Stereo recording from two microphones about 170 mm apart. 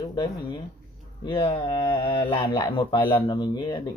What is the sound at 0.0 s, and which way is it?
Speech, 25° left (ahead or behind).